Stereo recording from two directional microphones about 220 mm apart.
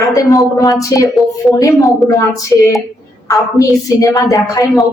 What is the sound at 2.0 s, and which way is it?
Speech, 15° left (ahead or behind).